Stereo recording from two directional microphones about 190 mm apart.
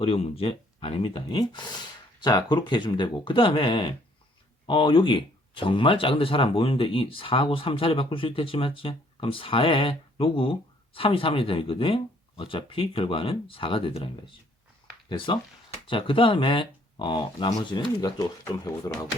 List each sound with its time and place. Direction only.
0.0 s speech: 30° left (ahead or behind)
15.9 s speech: 25° left (ahead or behind)